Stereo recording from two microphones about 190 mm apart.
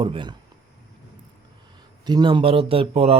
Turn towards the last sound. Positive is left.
turn(degrees=-30)  # may be behind; listen again after turning